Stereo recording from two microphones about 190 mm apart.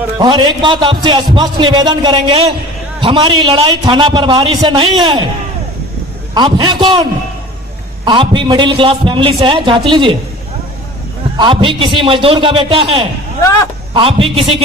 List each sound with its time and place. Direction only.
0.2 s a man's voice: 25° right (ahead or behind)
6.3 s a man's voice: 25° right (ahead or behind)
11.3 s a man's voice: 25° right (ahead or behind)